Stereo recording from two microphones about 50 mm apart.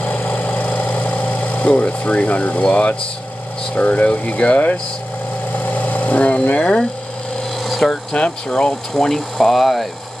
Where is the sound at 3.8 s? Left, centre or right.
Left.